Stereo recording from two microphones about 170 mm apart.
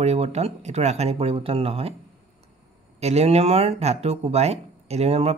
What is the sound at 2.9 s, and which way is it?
Speech, 40° right (ahead or behind).